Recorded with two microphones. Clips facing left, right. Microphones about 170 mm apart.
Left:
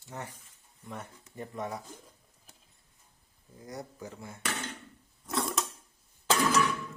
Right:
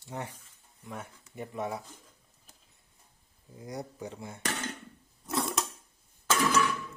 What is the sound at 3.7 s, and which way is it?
Speech, 15° right (ahead or behind).